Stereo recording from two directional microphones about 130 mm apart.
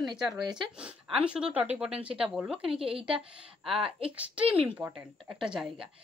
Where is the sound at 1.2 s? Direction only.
10° right (ahead or behind).